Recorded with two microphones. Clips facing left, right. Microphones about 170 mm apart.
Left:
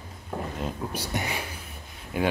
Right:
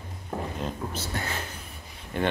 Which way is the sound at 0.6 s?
10° left (ahead or behind).